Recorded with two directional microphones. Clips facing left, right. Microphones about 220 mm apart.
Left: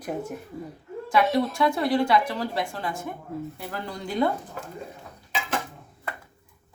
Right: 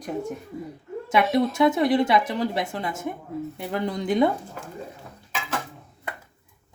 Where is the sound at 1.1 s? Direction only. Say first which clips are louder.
Right 1 dB; 20° right (ahead or behind).